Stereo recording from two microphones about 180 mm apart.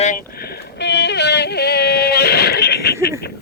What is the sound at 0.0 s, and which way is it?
Yodeling, 50° left (ahead or behind).